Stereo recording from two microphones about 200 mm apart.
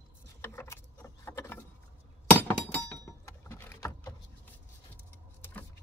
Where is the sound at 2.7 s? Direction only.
10° left (ahead or behind).